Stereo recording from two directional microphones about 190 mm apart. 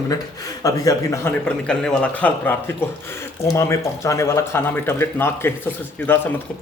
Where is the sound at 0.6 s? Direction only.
15° left (ahead or behind).